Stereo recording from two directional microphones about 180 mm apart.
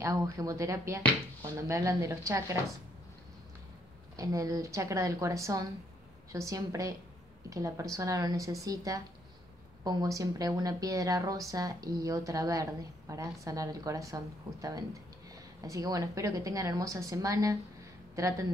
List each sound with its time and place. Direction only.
0.0 s speech: 20° right (ahead or behind)
4.2 s a woman's voice: 20° right (ahead or behind)